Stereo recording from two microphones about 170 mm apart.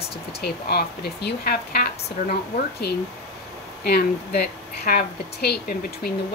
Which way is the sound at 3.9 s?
65° left (ahead or behind).